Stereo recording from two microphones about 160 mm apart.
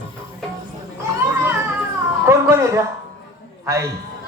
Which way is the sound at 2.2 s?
15° right (ahead or behind).